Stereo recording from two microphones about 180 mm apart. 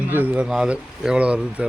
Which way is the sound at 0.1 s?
10° right (ahead or behind).